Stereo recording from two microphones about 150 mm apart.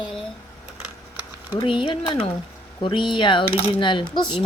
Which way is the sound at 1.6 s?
35° left (ahead or behind).